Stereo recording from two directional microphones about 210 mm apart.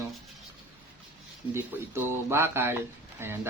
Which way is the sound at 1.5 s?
10° right (ahead or behind).